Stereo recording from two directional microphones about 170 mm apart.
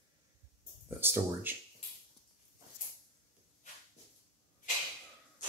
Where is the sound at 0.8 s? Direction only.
15° right (ahead or behind).